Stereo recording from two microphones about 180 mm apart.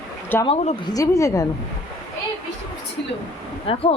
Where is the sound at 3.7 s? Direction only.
30° left (ahead or behind).